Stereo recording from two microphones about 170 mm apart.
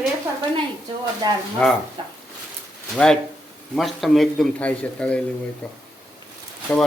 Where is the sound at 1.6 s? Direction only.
5° left (ahead or behind).